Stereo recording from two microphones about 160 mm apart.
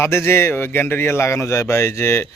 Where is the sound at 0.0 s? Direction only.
15° left (ahead or behind).